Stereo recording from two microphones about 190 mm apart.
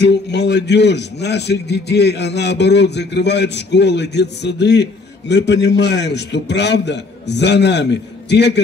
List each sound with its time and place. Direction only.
0.0 s a man's voice: 65° left (ahead or behind)